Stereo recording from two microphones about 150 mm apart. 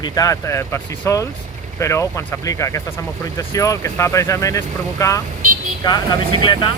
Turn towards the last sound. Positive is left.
turn(degrees=30)  # may be behind; listen again after turning